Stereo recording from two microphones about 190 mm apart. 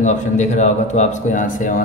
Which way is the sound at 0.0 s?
40° left (ahead or behind).